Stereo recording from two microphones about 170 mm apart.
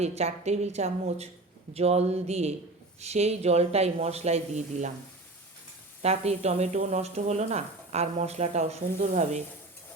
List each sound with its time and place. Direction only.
0.0 s speech: 40° right (ahead or behind)
6.0 s speech: 40° right (ahead or behind)